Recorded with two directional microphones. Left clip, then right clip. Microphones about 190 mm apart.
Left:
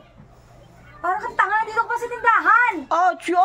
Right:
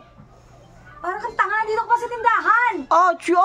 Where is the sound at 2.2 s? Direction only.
20° right (ahead or behind).